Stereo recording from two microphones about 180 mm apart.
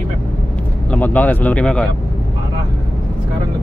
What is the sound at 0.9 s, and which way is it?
Speech, 10° left (ahead or behind).